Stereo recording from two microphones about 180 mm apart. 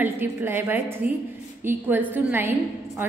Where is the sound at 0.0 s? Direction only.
10° right (ahead or behind).